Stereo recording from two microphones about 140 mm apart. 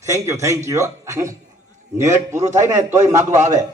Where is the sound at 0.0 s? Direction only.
20° right (ahead or behind).